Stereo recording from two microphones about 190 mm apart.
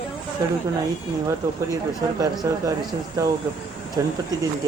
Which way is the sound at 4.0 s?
15° right (ahead or behind).